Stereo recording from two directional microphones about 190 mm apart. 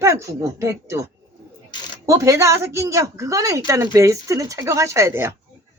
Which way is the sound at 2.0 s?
15° right (ahead or behind).